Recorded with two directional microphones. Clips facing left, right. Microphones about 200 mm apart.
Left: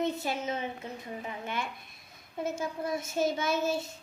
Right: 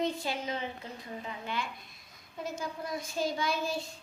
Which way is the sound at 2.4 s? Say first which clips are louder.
Left 4 dB; 25° left (ahead or behind).